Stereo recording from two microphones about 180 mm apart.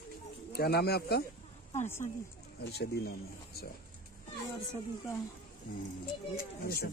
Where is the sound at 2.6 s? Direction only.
65° left (ahead or behind).